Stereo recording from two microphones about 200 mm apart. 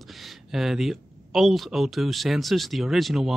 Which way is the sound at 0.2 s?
Centre (ahead or behind).